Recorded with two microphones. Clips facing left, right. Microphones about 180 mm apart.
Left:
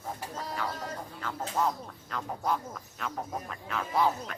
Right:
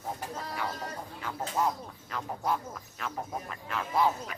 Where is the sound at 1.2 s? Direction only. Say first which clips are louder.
Even; 5° right (ahead or behind).